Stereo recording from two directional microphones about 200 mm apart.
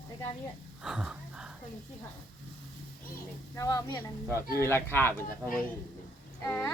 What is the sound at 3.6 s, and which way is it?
Speech, 15° left (ahead or behind).